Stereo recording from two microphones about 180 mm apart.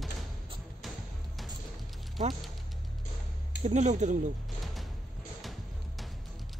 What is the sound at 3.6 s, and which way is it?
Speech, 40° right (ahead or behind).